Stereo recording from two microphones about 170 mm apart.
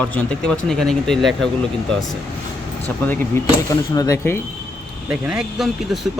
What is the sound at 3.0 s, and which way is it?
Speech, 10° left (ahead or behind).